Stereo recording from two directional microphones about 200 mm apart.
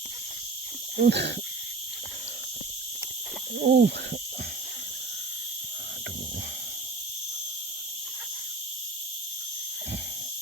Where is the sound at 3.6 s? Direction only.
50° right (ahead or behind).